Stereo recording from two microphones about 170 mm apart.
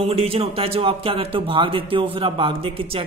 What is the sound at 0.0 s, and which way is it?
Speech, 35° right (ahead or behind).